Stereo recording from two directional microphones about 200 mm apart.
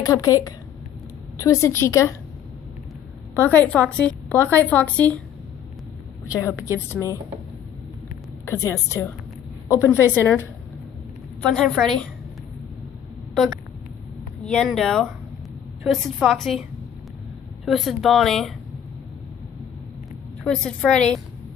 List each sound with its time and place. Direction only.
0.0 s a woman's voice: 20° left (ahead or behind)
3.3 s a woman's voice: 10° left (ahead or behind)
6.2 s a woman's voice: 15° left (ahead or behind)
8.5 s a woman's voice: 15° left (ahead or behind)
11.4 s speech: 5° left (ahead or behind)
14.4 s speech: 5° left (ahead or behind)
17.6 s speech: centre (ahead or behind)
20.4 s speech: 5° left (ahead or behind)